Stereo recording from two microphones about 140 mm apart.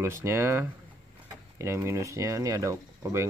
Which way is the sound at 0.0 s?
20° right (ahead or behind).